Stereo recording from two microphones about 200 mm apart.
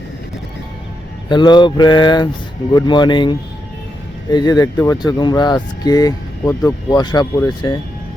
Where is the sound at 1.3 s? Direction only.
20° left (ahead or behind).